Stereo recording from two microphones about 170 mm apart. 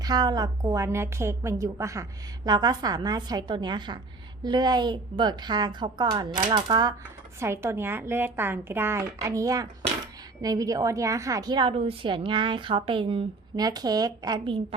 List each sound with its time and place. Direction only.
0.0 s a woman's voice: 25° right (ahead or behind)